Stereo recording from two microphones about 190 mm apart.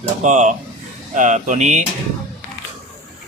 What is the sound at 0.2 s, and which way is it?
Speech, 40° right (ahead or behind).